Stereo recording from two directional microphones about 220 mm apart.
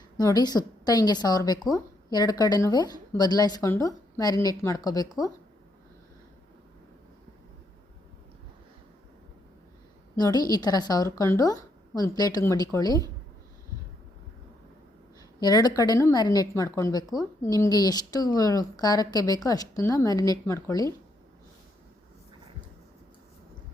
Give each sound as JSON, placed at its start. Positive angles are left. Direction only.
{"t": 0.2, "sound": "a woman's voice", "side_deg": 15}
{"t": 10.2, "sound": "a woman's voice", "side_deg": 20}
{"t": 15.4, "sound": "a woman's voice", "side_deg": 20}